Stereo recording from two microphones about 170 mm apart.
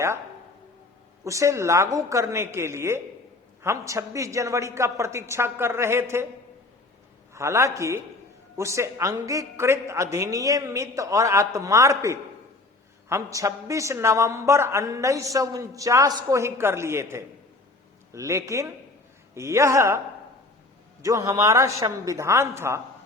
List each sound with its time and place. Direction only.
1.2 s a woman's voice: 20° right (ahead or behind)
7.3 s a woman's voice: 15° right (ahead or behind)
21.0 s a woman's voice: 20° right (ahead or behind)